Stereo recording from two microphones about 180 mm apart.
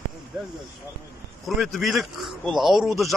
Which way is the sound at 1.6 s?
Centre (ahead or behind).